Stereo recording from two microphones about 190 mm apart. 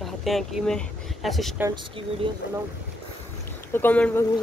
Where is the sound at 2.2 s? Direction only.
25° right (ahead or behind).